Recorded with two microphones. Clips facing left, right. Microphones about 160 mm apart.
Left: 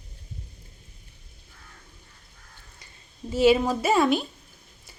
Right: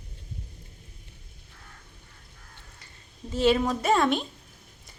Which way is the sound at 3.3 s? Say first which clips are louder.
Left 3 dB; 10° left (ahead or behind).